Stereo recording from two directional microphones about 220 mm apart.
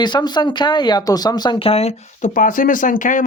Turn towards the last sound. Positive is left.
turn(degrees=35)  # may be behind; listen again after turning